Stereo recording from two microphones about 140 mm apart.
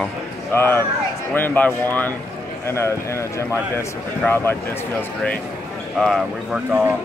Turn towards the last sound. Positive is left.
turn(degrees=-5)  # may be behind; listen again after turning